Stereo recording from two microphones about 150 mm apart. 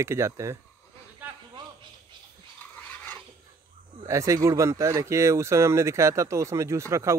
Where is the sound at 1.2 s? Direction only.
15° right (ahead or behind).